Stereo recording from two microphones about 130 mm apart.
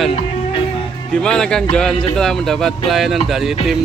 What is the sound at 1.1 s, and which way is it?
Speech, 5° left (ahead or behind).